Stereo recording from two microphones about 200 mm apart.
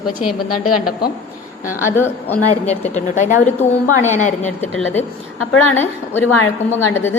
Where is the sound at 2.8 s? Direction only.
35° left (ahead or behind).